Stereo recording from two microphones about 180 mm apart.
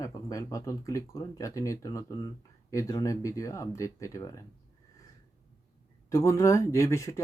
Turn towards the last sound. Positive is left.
turn(degrees=15)  # may be behind; listen again after turning